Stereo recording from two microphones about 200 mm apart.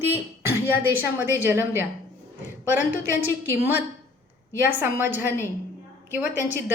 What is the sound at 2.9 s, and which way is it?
Speech, 85° right.